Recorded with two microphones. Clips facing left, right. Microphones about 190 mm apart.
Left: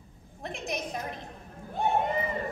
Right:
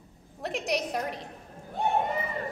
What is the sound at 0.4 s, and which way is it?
Speech, 75° right (ahead or behind).